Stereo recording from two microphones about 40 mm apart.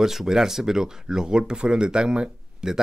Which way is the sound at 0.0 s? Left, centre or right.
Centre.